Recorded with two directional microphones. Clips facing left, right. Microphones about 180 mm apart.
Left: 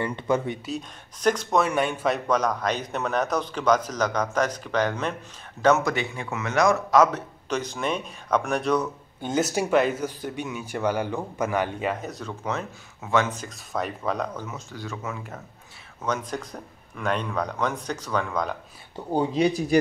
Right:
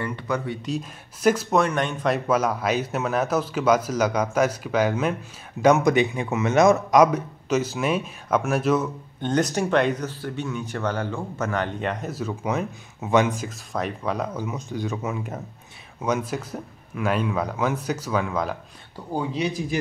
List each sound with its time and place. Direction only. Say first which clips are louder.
0.0 s speech: left 2 dB; 20° left (ahead or behind)
0.7 s speech: right 3 dB; 5° right (ahead or behind)
1.7 s speech: even; 10° left (ahead or behind)
9.2 s speech: right 2 dB; 5° left (ahead or behind); by 13.5 s 15° right (ahead or behind)
13.7 s speech: right 1 dB; centre (ahead or behind)
14.4 s speech: right 7 dB; 15° right (ahead or behind)
18.9 s speech: left 4 dB; 25° left (ahead or behind)